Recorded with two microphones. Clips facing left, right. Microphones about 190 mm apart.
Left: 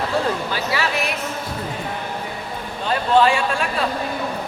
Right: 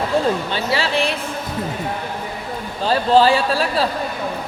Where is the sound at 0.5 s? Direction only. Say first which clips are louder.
Right 3 dB; 30° right (ahead or behind).